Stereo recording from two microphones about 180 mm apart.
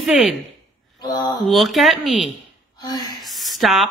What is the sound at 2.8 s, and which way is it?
Speech, 20° left (ahead or behind).